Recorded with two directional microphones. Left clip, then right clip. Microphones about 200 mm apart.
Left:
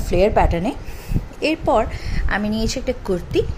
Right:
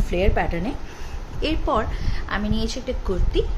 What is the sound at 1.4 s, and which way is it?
A woman's voice, 15° left (ahead or behind).